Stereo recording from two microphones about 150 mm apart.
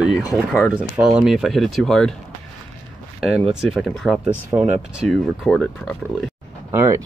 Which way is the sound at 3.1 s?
Centre (ahead or behind).